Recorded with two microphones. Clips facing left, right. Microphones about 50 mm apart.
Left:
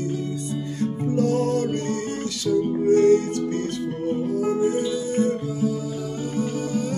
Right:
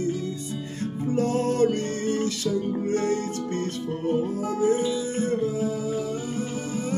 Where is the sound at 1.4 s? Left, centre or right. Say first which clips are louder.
Left 1 dB; right.